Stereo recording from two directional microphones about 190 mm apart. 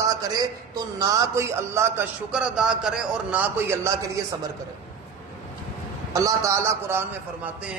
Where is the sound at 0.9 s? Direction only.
20° right (ahead or behind).